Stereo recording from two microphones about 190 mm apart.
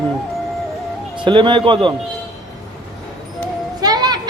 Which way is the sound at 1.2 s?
25° right (ahead or behind).